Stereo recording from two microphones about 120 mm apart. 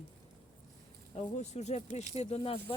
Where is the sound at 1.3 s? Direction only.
65° left (ahead or behind).